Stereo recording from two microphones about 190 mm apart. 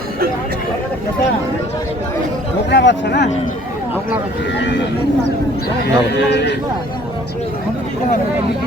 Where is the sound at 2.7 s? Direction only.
65° left (ahead or behind).